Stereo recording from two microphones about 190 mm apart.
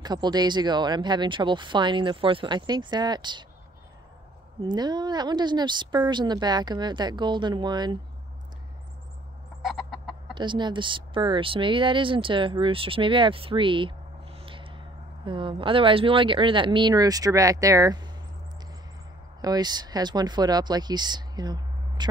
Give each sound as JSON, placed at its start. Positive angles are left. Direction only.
{"t": 0.0, "sound": "speech", "side_deg": -20}
{"t": 4.6, "sound": "speech", "side_deg": -20}
{"t": 9.6, "sound": "chicken", "side_deg": 0}
{"t": 10.3, "sound": "speech", "side_deg": -25}
{"t": 19.4, "sound": "speech", "side_deg": -20}